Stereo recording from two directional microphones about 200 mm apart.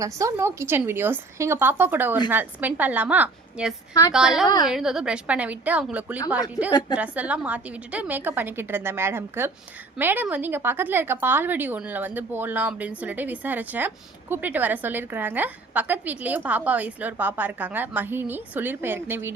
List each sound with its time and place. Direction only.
0.0 s a woman's voice: 15° right (ahead or behind)
6.6 s a woman's voice: 20° left (ahead or behind)
6.9 s a woman's voice: 5° right (ahead or behind)